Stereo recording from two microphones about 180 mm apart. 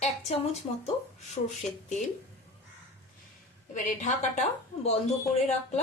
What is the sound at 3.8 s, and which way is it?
Speech, 40° left (ahead or behind).